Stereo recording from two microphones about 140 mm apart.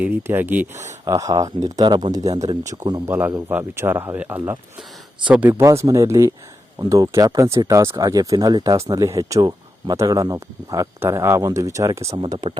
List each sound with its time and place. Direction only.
0.0 s speech: 15° right (ahead or behind)
0.7 s speech: 55° right (ahead or behind)
1.0 s speech: 25° right (ahead or behind)
3.1 s speech: 15° right (ahead or behind)
12.1 s speech: 35° right (ahead or behind)